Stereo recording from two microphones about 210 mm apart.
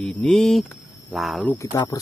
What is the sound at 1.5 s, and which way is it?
Speech, 15° left (ahead or behind).